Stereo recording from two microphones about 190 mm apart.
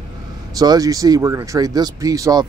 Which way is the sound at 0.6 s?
20° right (ahead or behind).